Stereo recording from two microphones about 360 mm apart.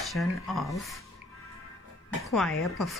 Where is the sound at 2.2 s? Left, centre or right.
Centre.